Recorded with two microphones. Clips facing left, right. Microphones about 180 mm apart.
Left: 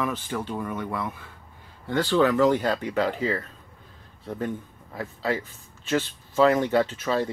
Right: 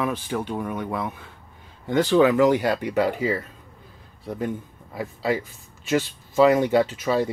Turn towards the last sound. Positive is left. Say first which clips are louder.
# right 3 dB
turn(degrees=-10)  # may be behind; listen again after turning